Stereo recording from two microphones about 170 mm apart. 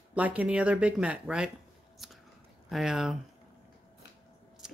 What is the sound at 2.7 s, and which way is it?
Speech, 5° right (ahead or behind).